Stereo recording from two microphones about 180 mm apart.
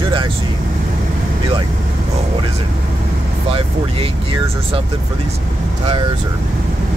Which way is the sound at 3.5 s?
30° right (ahead or behind).